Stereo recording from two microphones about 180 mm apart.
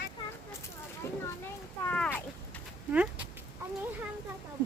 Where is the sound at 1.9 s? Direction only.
10° left (ahead or behind).